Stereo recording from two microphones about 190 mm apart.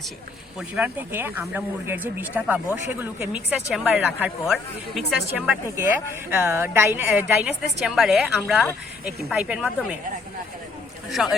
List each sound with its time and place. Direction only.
0.8 s a woman's voice: 10° right (ahead or behind)
5.5 s a woman's voice: 10° right (ahead or behind)
11.1 s speech: centre (ahead or behind)